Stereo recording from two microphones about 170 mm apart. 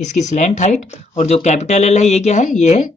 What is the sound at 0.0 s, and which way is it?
A man's voice, 45° left (ahead or behind).